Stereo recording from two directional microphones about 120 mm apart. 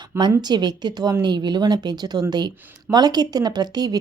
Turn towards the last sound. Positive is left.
turn(degrees=-35)  # may be behind; listen again after turning